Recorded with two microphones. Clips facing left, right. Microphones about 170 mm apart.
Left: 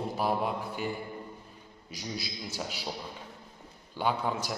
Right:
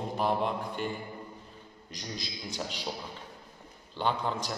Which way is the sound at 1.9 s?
10° left (ahead or behind).